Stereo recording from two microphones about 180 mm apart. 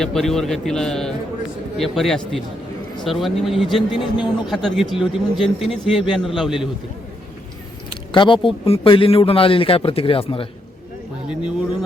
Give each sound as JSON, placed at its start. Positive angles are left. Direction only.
{"t": 0.0, "sound": "a man's voice", "side_deg": 0}
{"t": 7.9, "sound": "a man's voice", "side_deg": 25}
{"t": 11.3, "sound": "a man's voice", "side_deg": -5}